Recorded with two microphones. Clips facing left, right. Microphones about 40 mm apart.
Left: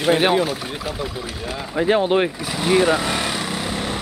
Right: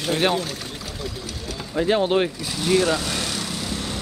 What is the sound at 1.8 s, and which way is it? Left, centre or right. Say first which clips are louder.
Speech: left 2 dB; left.